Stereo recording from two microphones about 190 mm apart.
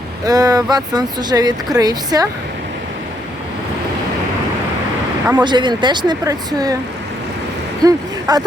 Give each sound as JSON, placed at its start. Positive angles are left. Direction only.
{"t": 0.3, "sound": "speech", "side_deg": -20}
{"t": 5.3, "sound": "speech", "side_deg": -25}
{"t": 7.9, "sound": "speech", "side_deg": -20}